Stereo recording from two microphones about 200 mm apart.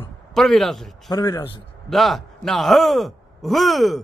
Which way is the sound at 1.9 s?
Centre (ahead or behind).